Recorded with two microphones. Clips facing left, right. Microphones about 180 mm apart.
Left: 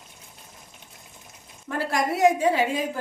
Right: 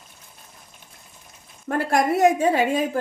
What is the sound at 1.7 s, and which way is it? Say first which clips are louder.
Speech: right 5 dB; 50° right (ahead or behind).